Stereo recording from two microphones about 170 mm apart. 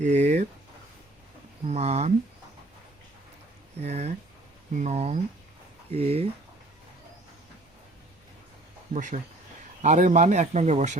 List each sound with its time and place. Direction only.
0.0 s speech: 40° right (ahead or behind)
1.6 s speech: 40° right (ahead or behind)
3.8 s speech: 40° right (ahead or behind)
8.9 s speech: 45° right (ahead or behind)